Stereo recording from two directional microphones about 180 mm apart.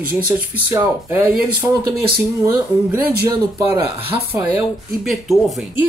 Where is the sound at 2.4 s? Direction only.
15° right (ahead or behind).